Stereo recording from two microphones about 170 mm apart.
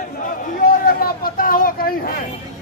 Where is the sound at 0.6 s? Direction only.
60° left (ahead or behind).